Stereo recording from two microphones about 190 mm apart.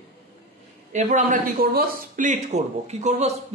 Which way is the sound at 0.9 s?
40° right (ahead or behind).